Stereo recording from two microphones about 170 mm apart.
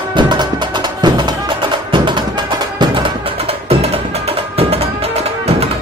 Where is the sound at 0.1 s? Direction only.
25° right (ahead or behind).